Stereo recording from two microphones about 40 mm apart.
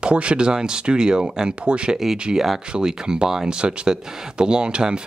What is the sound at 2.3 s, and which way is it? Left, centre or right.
Speech, centre.